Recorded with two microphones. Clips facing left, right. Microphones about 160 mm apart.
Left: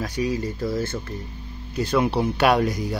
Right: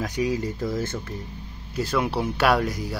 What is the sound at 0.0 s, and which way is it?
Speech, 15° right (ahead or behind).